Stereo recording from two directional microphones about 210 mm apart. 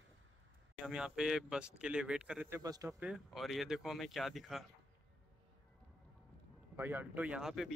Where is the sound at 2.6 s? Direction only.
15° right (ahead or behind).